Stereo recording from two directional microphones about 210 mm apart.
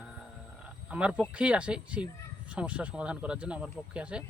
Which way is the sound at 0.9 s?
5° right (ahead or behind).